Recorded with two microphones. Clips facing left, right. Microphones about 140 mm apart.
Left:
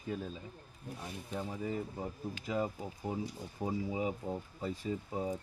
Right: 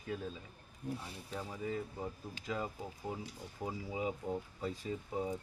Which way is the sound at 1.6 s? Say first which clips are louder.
Left 2 dB; 25° left (ahead or behind).